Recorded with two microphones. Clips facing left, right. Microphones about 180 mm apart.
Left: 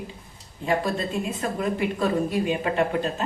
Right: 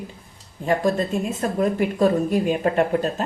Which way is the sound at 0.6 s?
45° right (ahead or behind).